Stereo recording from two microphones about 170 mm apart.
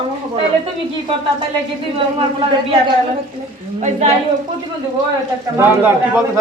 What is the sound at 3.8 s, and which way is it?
Speech, 40° right (ahead or behind).